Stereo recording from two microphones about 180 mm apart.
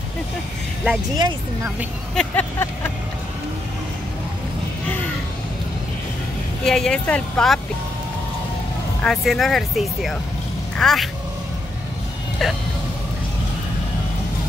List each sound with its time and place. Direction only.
1.1 s speech: 20° right (ahead or behind)
2.1 s vehicle: 10° left (ahead or behind)
6.6 s speech: 5° left (ahead or behind)
9.0 s speech: centre (ahead or behind)